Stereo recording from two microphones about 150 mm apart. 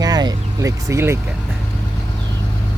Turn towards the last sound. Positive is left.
turn(degrees=-20)  # may be behind; listen again after turning